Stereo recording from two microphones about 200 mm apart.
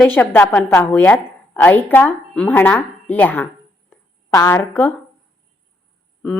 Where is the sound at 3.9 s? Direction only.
15° left (ahead or behind).